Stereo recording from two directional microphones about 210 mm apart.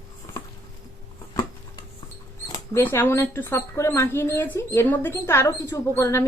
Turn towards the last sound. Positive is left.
turn(degrees=15)  # may be behind; listen again after turning